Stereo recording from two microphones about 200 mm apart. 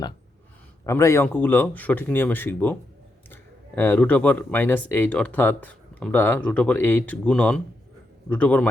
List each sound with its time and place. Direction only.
0.9 s speech: 15° left (ahead or behind)
3.8 s speech: 10° left (ahead or behind)